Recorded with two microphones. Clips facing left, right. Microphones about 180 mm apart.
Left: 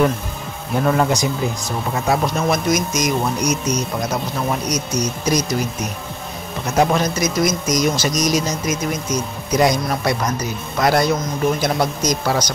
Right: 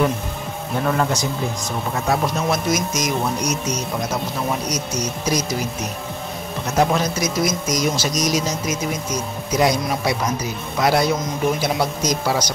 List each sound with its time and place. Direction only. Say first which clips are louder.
0.8 s speech: left 3 dB; 10° left (ahead or behind)
2.0 s speech: left 2 dB; centre (ahead or behind)
6.7 s speech: left 2 dB; centre (ahead or behind)